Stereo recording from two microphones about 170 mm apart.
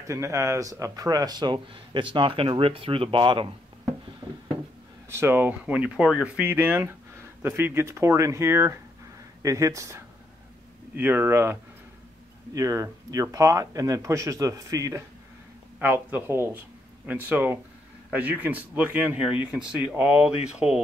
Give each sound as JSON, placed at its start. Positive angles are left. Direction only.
{"t": 0.0, "sound": "speech", "side_deg": -15}
{"t": 5.1, "sound": "speech", "side_deg": -15}
{"t": 12.5, "sound": "speech", "side_deg": -20}